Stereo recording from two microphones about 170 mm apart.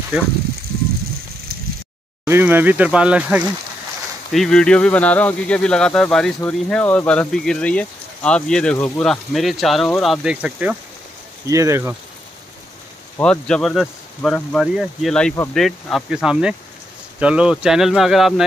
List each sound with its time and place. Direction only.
2.2 s speech: 15° right (ahead or behind)
11.4 s speech: 20° right (ahead or behind)
13.2 s speech: 5° left (ahead or behind)